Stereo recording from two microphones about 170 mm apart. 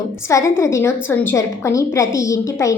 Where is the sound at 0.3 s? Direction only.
15° left (ahead or behind).